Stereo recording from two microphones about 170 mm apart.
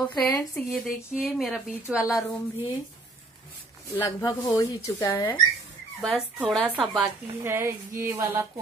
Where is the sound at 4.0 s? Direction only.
20° left (ahead or behind).